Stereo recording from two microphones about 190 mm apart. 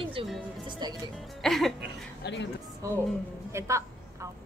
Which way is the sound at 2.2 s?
70° left (ahead or behind).